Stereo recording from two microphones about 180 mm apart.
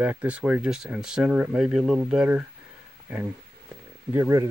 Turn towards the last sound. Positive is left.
turn(degrees=-15)  # may be behind; listen again after turning